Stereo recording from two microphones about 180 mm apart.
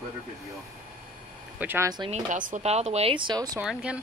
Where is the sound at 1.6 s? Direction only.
10° right (ahead or behind).